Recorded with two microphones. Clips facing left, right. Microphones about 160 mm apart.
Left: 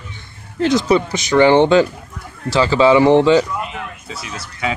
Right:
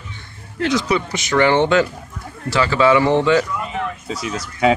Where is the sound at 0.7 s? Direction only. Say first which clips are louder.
Left 5 dB; 35° left (ahead or behind).